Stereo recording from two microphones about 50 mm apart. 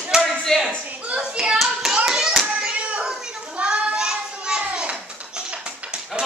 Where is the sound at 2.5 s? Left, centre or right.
Right.